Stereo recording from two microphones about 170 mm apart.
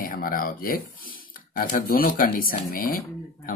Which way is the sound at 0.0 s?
55° left (ahead or behind).